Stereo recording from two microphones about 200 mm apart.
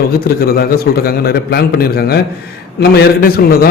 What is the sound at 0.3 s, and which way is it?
A man's voice, 50° left (ahead or behind).